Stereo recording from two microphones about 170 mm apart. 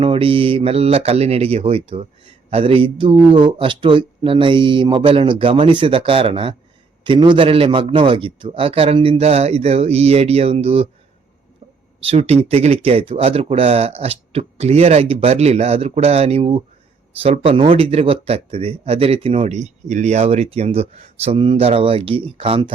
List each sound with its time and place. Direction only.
0.0 s speech: 35° right (ahead or behind)
12.0 s speech: 35° right (ahead or behind)